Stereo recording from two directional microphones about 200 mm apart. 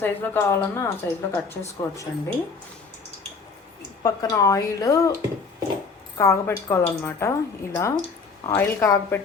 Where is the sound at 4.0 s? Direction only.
15° left (ahead or behind).